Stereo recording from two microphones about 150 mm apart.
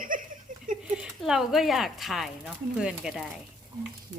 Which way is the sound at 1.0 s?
5° right (ahead or behind).